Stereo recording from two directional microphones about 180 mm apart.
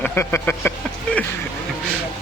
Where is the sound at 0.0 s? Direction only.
10° left (ahead or behind).